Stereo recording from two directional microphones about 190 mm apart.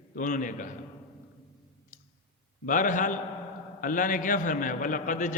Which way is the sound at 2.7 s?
45° left (ahead or behind).